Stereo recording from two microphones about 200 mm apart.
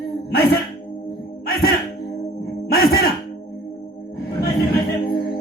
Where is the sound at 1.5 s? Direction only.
50° left (ahead or behind).